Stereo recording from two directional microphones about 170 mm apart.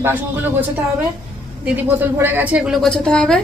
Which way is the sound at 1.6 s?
10° right (ahead or behind).